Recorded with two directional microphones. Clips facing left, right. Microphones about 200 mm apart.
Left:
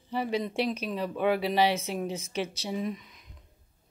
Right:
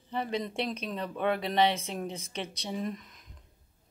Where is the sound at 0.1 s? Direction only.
5° left (ahead or behind).